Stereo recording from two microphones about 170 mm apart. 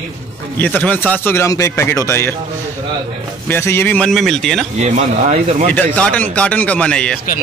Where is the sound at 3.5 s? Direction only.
15° left (ahead or behind).